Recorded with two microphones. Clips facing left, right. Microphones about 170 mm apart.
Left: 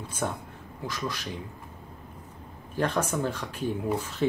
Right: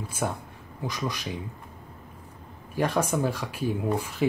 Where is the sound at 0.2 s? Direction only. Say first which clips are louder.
Right 1 dB; 10° right (ahead or behind).